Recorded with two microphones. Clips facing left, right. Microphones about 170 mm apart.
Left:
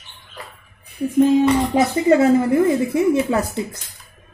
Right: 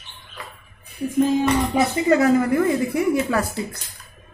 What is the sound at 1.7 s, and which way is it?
A woman's voice, 25° left (ahead or behind).